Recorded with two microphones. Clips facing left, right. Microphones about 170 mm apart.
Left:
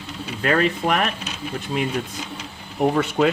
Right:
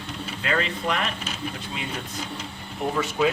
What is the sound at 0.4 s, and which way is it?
Speech, 50° left (ahead or behind).